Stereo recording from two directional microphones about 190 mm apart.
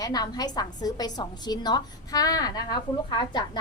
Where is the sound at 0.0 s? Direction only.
20° left (ahead or behind).